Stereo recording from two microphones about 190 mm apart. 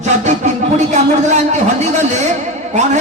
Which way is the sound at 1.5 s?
35° right (ahead or behind).